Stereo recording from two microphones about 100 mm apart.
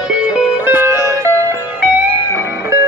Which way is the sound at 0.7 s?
20° right (ahead or behind).